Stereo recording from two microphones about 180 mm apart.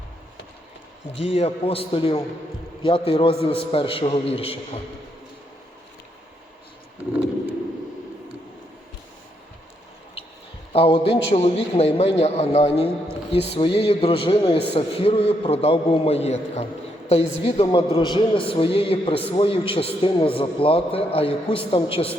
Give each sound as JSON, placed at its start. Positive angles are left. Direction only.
{"t": 1.2, "sound": "a man's voice", "side_deg": 35}
{"t": 10.7, "sound": "a sound", "side_deg": 30}
{"t": 11.0, "sound": "a man's voice", "side_deg": 30}